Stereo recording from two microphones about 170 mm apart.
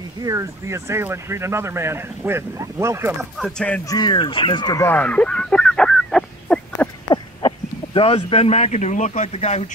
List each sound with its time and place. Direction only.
0.2 s speech: 20° right (ahead or behind)
3.3 s speech: 5° left (ahead or behind)
3.9 s speech: 25° left (ahead or behind)
4.8 s a sound: 10° left (ahead or behind)
7.1 s speech: 30° left (ahead or behind)